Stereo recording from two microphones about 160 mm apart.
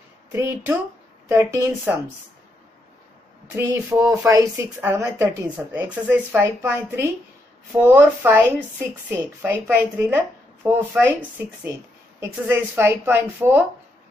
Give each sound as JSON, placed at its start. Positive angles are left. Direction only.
{"t": 0.3, "sound": "speech", "side_deg": -15}
{"t": 3.5, "sound": "speech", "side_deg": -20}
{"t": 12.2, "sound": "speech", "side_deg": -15}